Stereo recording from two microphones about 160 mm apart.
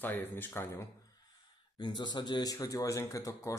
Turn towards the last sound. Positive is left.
turn(degrees=20)  # may be behind; listen again after turning